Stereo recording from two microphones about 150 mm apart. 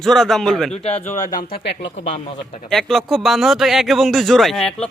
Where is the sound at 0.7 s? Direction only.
45° left (ahead or behind); by 1.5 s 60° left (ahead or behind).